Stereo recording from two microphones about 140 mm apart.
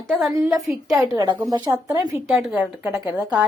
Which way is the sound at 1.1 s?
30° right (ahead or behind).